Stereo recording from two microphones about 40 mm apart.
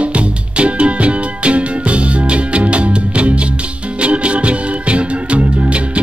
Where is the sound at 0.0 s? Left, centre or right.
Right.